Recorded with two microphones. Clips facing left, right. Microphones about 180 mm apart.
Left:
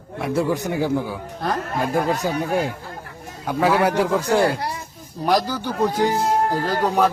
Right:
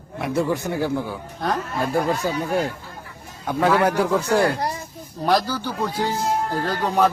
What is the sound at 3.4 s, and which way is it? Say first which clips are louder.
A man's voice: even; 5° left (ahead or behind).